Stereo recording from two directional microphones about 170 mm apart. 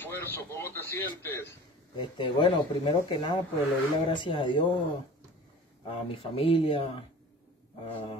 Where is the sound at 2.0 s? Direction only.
25° left (ahead or behind).